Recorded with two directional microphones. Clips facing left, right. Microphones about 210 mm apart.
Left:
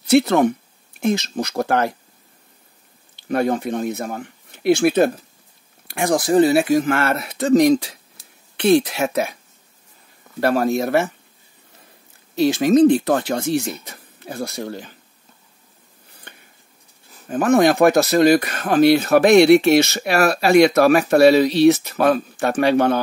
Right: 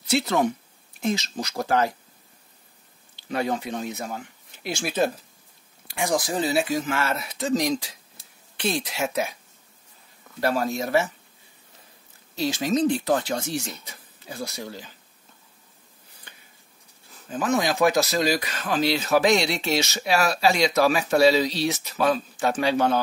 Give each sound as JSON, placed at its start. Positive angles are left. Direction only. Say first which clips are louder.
{"t": 0.1, "sound": "speech", "louder": "left 8 dB", "side_deg": 55}
{"t": 3.3, "sound": "speech", "louder": "left 7 dB", "side_deg": 55}
{"t": 10.4, "sound": "speech", "louder": "left 6 dB", "side_deg": 60}
{"t": 12.4, "sound": "speech", "louder": "left 9 dB", "side_deg": 60}
{"t": 16.3, "sound": "a sound", "louder": "left 7 dB", "side_deg": 60}
{"t": 17.3, "sound": "speech", "louder": "left 9 dB", "side_deg": 55}